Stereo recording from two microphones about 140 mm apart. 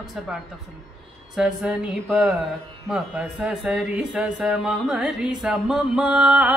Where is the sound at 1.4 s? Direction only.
5° right (ahead or behind).